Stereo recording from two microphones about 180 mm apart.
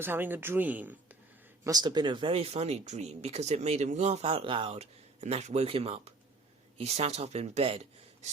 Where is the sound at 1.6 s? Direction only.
20° right (ahead or behind).